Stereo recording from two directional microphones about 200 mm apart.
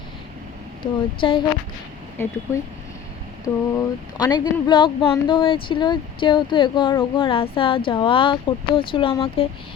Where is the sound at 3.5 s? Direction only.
10° left (ahead or behind).